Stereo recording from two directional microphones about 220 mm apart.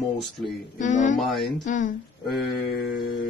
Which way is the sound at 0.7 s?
35° left (ahead or behind).